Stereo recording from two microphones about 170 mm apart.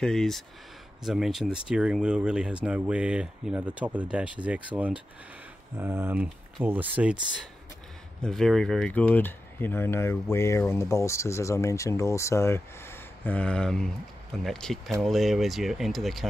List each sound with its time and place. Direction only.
0.0 s speech: 5° left (ahead or behind)
8.2 s speech: 5° left (ahead or behind)